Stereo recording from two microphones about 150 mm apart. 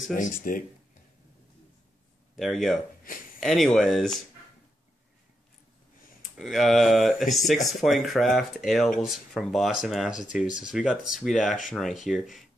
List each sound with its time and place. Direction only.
0.1 s speech: 65° left (ahead or behind)
2.3 s speech: centre (ahead or behind)
6.2 s speech: centre (ahead or behind)
10.4 s speech: 55° left (ahead or behind)
10.7 s speech: centre (ahead or behind)